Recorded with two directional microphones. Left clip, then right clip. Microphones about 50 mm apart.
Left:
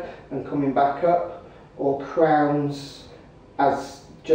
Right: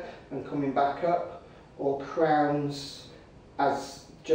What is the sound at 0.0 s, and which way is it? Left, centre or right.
A man's voice, centre.